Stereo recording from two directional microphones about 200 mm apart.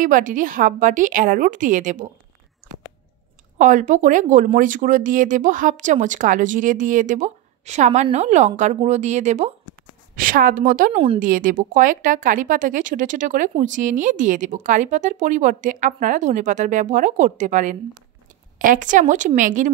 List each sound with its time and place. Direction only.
0.0 s speech: 40° right (ahead or behind)
3.5 s a woman's voice: 40° right (ahead or behind)
10.9 s a woman's voice: 30° right (ahead or behind)
11.1 s speech: 40° right (ahead or behind)